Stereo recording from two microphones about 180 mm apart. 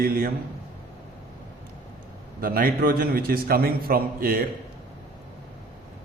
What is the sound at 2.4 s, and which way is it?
A man's voice, 55° right (ahead or behind).